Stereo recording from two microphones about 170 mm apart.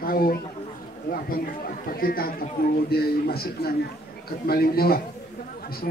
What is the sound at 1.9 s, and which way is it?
A man's voice, 60° left (ahead or behind).